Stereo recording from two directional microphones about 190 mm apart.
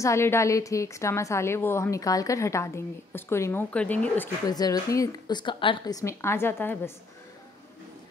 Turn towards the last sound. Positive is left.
turn(degrees=10)  # may be behind; listen again after turning